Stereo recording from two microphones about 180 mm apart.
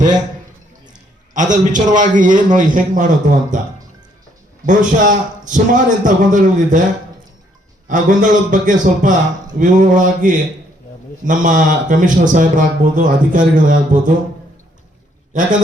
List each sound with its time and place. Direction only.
1.3 s speech: 45° right (ahead or behind)
4.6 s speech: 45° right (ahead or behind)
7.9 s speech: 45° right (ahead or behind)
15.3 s a man's voice: 45° right (ahead or behind)